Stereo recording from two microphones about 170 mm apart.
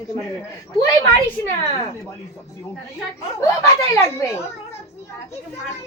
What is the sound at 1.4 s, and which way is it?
Speech, 15° left (ahead or behind).